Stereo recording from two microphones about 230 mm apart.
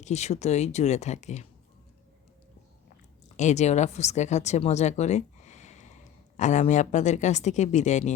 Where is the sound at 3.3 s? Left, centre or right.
Left.